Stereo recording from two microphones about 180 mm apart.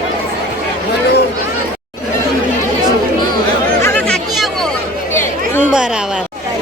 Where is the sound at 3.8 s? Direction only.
10° left (ahead or behind).